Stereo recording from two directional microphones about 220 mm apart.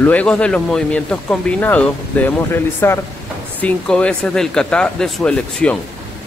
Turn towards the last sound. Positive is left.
turn(degrees=5)  # may be behind; listen again after turning